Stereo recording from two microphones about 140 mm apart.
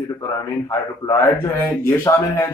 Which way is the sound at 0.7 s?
20° left (ahead or behind).